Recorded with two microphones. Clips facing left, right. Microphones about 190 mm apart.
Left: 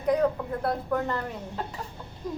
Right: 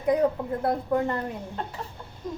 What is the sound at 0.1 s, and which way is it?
A woman's voice, 20° right (ahead or behind).